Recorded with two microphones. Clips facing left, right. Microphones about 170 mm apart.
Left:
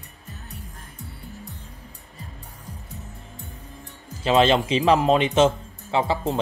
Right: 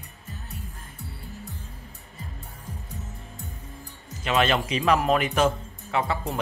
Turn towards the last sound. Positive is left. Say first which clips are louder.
# left 4 dB
turn(degrees=25)  # may be behind; listen again after turning